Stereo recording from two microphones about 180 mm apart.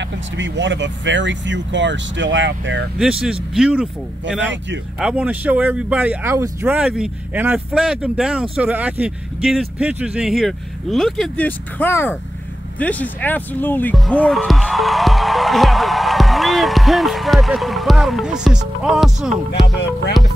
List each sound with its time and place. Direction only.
0.0 s speech: 85° right
3.0 s speech: 5° right (ahead or behind)